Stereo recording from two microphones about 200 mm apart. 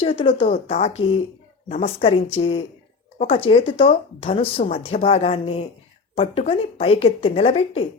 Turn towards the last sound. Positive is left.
turn(degrees=30)  # may be behind; listen again after turning